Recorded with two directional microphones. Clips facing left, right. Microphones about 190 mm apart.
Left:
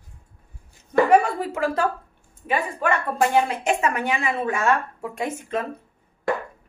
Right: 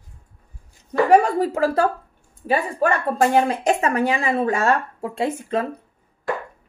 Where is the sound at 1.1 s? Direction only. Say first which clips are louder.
Right 3 dB; 40° right (ahead or behind).